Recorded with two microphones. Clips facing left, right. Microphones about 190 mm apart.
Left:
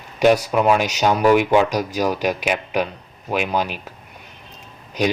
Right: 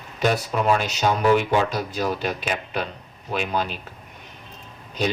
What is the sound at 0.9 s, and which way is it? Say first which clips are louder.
Speech: left 3 dB; 10° left (ahead or behind).